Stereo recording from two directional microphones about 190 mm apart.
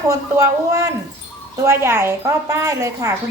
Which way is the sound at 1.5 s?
15° right (ahead or behind).